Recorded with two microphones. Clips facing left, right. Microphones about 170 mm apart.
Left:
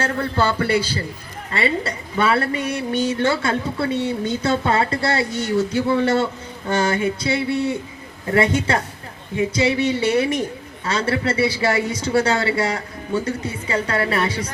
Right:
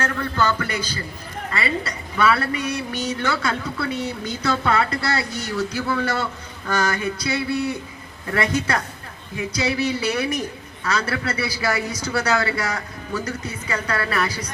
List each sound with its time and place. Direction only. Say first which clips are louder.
0.0 s a man's voice: left 2 dB; 30° left (ahead or behind)